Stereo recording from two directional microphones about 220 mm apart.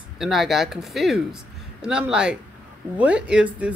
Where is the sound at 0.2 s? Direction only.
Centre (ahead or behind).